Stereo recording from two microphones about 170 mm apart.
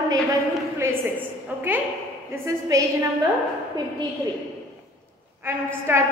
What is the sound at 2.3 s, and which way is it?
Speech, 20° right (ahead or behind).